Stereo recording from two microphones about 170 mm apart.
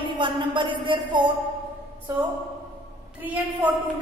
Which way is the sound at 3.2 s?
10° right (ahead or behind).